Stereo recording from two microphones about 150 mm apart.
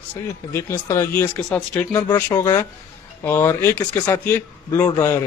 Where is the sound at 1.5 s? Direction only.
5° left (ahead or behind).